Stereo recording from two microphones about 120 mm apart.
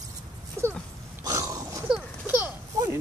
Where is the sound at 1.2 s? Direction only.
30° right (ahead or behind).